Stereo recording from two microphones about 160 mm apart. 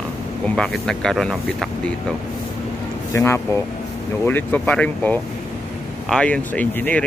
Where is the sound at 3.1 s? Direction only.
15° left (ahead or behind).